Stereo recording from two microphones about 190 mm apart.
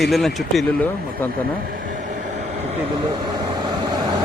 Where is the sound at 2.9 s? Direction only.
20° right (ahead or behind).